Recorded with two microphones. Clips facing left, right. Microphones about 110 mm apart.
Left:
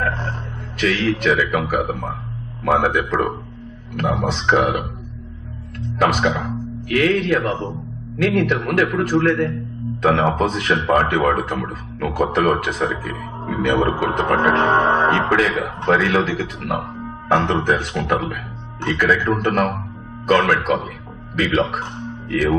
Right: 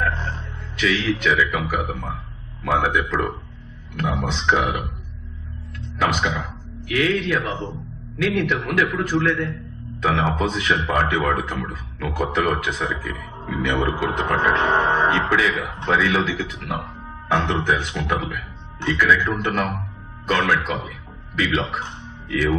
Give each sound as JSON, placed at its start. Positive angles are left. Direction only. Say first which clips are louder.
{"t": 0.0, "sound": "a sound", "louder": "left 1 dB", "side_deg": 45}
{"t": 0.7, "sound": "speech", "louder": "left 2 dB", "side_deg": 50}
{"t": 5.9, "sound": "speech", "louder": "left 4 dB", "side_deg": 45}